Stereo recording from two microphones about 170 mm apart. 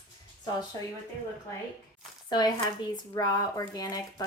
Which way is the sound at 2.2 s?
25° left (ahead or behind).